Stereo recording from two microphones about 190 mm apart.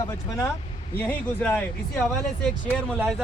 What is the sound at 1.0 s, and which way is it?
Speech, 5° left (ahead or behind).